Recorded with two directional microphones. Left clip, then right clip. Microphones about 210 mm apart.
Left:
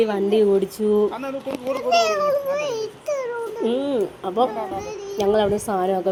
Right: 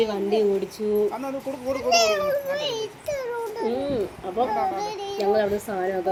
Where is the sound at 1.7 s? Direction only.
5° left (ahead or behind).